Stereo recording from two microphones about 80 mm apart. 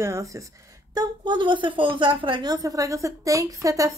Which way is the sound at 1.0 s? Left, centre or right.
Right.